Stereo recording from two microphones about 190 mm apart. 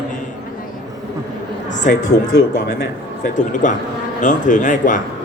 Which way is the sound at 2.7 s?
60° left (ahead or behind).